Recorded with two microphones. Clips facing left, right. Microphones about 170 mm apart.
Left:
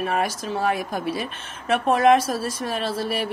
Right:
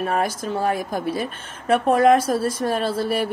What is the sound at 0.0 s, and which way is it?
Speech, 45° right (ahead or behind).